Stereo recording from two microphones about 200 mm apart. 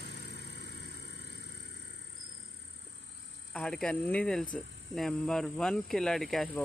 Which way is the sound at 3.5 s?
5° left (ahead or behind).